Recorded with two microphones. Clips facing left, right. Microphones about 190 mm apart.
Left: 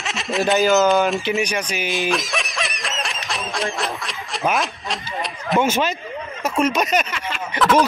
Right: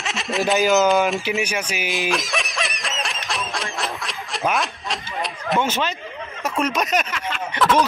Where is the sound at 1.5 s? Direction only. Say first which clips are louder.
Left 2 dB; 5° right (ahead or behind).